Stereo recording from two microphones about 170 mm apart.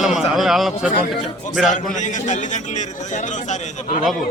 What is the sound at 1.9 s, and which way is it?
A man's voice, 45° left (ahead or behind).